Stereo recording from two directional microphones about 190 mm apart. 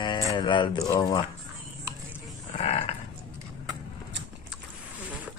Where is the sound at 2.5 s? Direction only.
35° left (ahead or behind).